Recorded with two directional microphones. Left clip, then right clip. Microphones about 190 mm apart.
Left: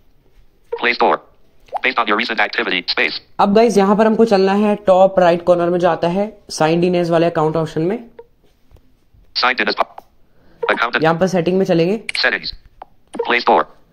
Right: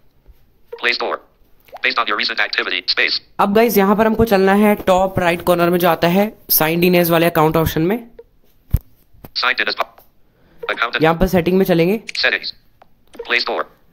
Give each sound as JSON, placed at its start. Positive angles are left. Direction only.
{"t": 0.7, "sound": "speech", "side_deg": -10}
{"t": 9.3, "sound": "speech", "side_deg": -10}